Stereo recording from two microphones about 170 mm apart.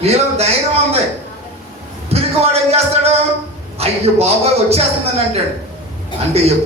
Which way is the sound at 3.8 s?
35° right (ahead or behind).